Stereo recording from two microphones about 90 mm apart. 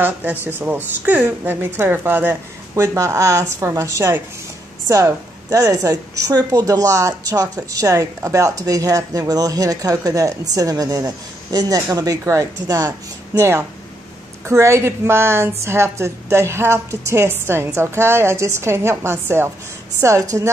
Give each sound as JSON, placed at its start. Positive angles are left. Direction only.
{"t": 0.0, "sound": "a woman's voice", "side_deg": -20}
{"t": 2.7, "sound": "a woman's voice", "side_deg": -35}